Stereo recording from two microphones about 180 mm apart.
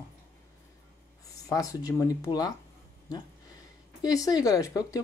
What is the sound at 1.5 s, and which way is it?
Speech, 20° left (ahead or behind).